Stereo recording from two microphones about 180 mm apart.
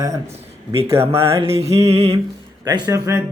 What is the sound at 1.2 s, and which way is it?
Mantra, 30° right (ahead or behind).